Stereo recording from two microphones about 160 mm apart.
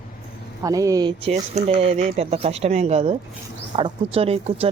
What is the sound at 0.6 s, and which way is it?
Speech, 20° right (ahead or behind).